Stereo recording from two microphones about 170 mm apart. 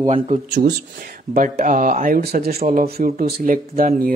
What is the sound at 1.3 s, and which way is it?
Speech, 50° right (ahead or behind).